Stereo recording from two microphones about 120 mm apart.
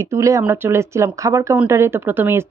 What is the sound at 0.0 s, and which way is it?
A woman's voice, 25° right (ahead or behind).